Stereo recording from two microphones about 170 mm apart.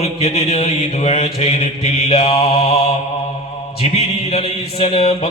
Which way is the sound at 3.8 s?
35° left (ahead or behind).